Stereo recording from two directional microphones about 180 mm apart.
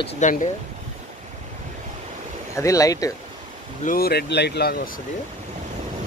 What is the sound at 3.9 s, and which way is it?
Speech, 60° left (ahead or behind).